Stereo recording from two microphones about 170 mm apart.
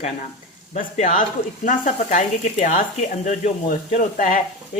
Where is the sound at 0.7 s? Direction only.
45° left (ahead or behind).